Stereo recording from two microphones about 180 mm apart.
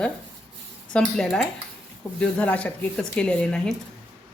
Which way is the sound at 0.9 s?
5° left (ahead or behind).